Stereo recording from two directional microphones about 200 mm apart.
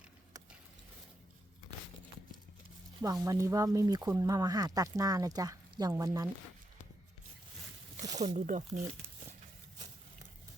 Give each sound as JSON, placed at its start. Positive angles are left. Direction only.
{"t": 3.0, "sound": "speech", "side_deg": -20}
{"t": 8.2, "sound": "speech", "side_deg": -35}